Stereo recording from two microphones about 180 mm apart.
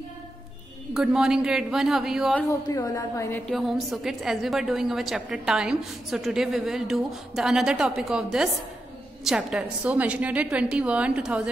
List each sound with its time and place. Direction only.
0.9 s a woman's voice: 5° right (ahead or behind)
2.7 s a woman's voice: 20° left (ahead or behind)
3.5 s a woman's voice: centre (ahead or behind)